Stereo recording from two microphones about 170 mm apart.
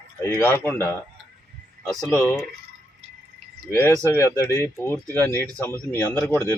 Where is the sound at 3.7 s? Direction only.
15° left (ahead or behind).